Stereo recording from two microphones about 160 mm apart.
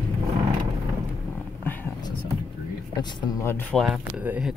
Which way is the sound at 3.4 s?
15° left (ahead or behind).